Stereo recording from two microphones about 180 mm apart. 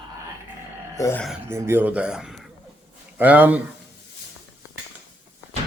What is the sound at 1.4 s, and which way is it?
Speech, 15° right (ahead or behind).